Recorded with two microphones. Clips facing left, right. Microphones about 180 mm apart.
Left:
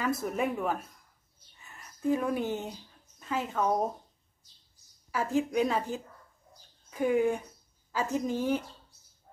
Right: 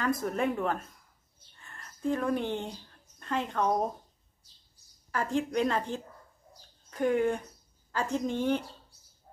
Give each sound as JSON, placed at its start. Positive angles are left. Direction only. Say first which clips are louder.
{"t": 0.0, "sound": "speech", "louder": "right 1 dB", "side_deg": 5}
{"t": 1.5, "sound": "a sound", "louder": "right 1 dB", "side_deg": 5}
{"t": 5.1, "sound": "speech", "louder": "left 1 dB", "side_deg": 5}